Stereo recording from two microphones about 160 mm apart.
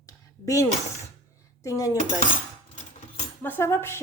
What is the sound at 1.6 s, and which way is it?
Cutlery, 20° left (ahead or behind).